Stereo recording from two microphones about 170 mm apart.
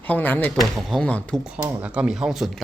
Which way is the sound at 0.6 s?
Centre (ahead or behind).